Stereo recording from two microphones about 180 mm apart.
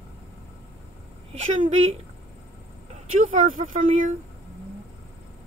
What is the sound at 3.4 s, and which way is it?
Speech, 45° right (ahead or behind).